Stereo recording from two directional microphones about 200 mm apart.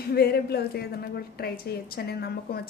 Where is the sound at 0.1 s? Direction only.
50° left (ahead or behind).